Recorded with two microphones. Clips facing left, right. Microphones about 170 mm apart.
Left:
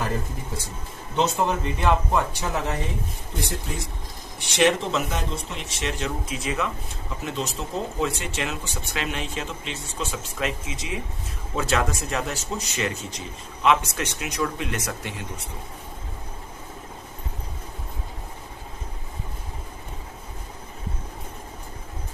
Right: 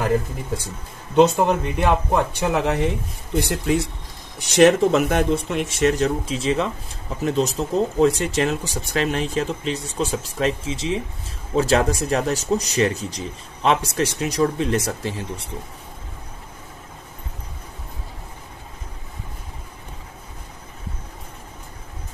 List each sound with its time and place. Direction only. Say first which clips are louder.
1.1 s speech: right 7 dB; 55° right (ahead or behind)
2.3 s speech: right 7 dB; 65° right (ahead or behind)
4.4 s speech: right 7 dB; 45° right (ahead or behind)